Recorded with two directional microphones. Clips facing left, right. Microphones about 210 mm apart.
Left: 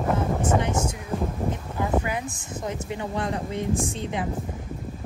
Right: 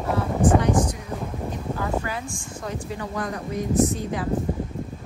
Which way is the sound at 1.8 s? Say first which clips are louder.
Left 4 dB; 20° left (ahead or behind).